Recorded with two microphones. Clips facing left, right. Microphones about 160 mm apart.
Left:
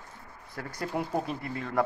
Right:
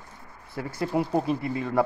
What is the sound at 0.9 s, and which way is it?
Speech, 25° right (ahead or behind).